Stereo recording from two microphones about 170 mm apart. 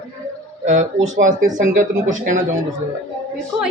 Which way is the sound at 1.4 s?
50° right (ahead or behind).